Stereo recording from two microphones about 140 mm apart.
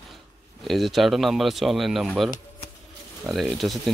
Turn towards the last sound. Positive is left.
turn(degrees=0)  # may be behind; listen again after turning